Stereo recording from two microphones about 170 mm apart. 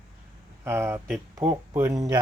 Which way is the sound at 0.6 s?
15° right (ahead or behind).